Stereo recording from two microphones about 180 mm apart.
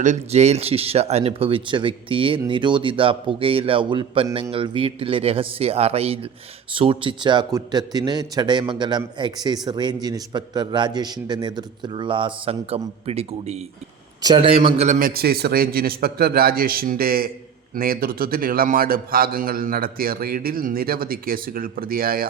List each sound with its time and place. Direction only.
0.0 s a man's voice: 40° right (ahead or behind)
14.2 s a man's voice: 25° right (ahead or behind)
14.8 s a man's voice: 50° right (ahead or behind)